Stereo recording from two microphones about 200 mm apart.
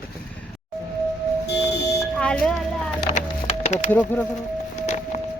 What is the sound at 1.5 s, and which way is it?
Music, 60° left (ahead or behind).